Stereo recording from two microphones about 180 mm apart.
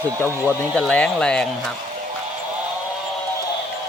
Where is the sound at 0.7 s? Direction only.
5° left (ahead or behind).